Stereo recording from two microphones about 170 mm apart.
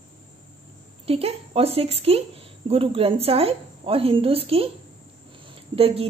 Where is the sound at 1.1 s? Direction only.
35° right (ahead or behind).